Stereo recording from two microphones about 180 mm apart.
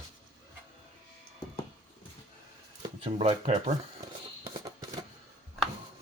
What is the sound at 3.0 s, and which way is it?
Speech, 30° right (ahead or behind).